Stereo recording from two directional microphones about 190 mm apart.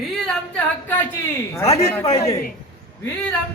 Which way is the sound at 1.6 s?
30° left (ahead or behind).